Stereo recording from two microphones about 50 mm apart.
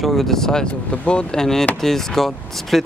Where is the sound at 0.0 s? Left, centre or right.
Centre.